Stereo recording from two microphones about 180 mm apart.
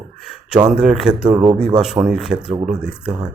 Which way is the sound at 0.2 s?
5° right (ahead or behind).